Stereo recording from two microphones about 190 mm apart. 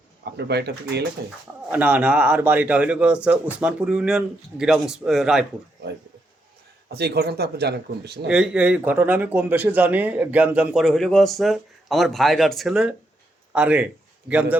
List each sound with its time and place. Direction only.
0.3 s speech: 60° right (ahead or behind)
1.7 s a man's voice: 5° right (ahead or behind)
5.8 s speech: 60° right (ahead or behind)
8.3 s a man's voice: 5° right (ahead or behind)